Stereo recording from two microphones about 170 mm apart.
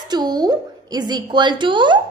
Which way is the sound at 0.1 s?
25° right (ahead or behind).